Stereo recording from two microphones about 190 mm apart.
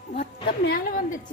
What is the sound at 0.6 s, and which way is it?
Speech, 50° left (ahead or behind).